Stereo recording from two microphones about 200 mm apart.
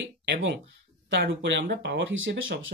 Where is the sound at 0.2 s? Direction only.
60° right (ahead or behind).